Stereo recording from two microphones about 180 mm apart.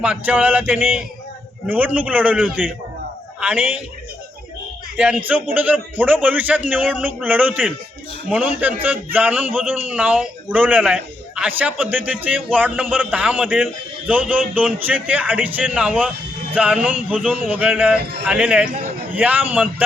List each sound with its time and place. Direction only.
0.0 s a man's voice: 5° right (ahead or behind)
4.9 s a man's voice: 10° right (ahead or behind)